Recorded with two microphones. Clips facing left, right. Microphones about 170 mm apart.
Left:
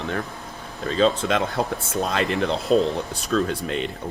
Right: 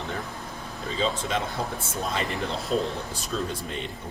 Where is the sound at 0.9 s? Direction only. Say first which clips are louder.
Left 7 dB; 80° left.